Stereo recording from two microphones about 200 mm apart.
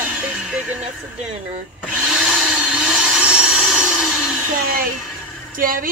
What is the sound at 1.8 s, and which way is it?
Tools, centre (ahead or behind).